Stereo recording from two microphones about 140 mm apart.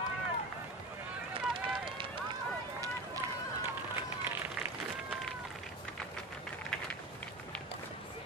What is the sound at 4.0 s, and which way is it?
Run, 15° right (ahead or behind).